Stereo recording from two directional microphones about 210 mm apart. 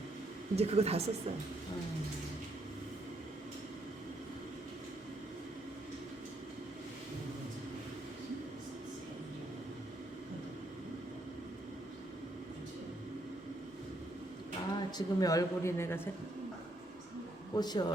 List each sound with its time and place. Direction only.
0.5 s speech: 30° right (ahead or behind)
14.8 s speech: 20° left (ahead or behind)
17.5 s speech: 20° left (ahead or behind)